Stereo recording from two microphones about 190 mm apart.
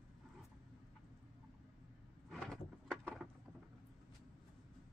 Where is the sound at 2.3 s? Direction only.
Centre (ahead or behind).